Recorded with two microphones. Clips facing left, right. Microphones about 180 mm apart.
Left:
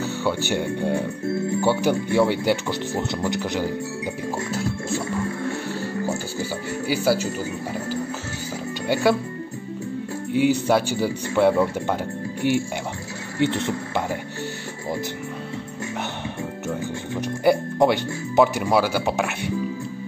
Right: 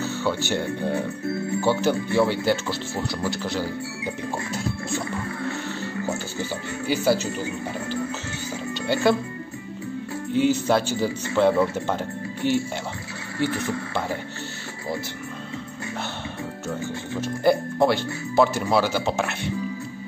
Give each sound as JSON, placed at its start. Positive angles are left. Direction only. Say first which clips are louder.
{"t": 0.0, "sound": "speech", "louder": "left 1 dB", "side_deg": 15}
{"t": 5.7, "sound": "music", "louder": "left 2 dB", "side_deg": 10}
{"t": 6.9, "sound": "speech", "louder": "even", "side_deg": 10}
{"t": 8.8, "sound": "speech", "louder": "left 1 dB", "side_deg": 10}
{"t": 10.3, "sound": "speech", "louder": "left 1 dB", "side_deg": 10}
{"t": 13.4, "sound": "speech", "louder": "left 3 dB", "side_deg": 25}
{"t": 16.6, "sound": "speech", "louder": "left 1 dB", "side_deg": 15}